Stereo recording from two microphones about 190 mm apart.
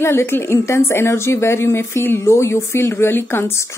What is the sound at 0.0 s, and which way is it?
A woman's voice, 10° left (ahead or behind).